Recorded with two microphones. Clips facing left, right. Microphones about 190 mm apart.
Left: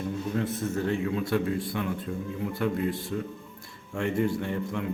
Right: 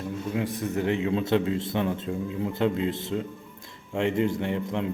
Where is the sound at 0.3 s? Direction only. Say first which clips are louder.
Right 2 dB; 15° right (ahead or behind).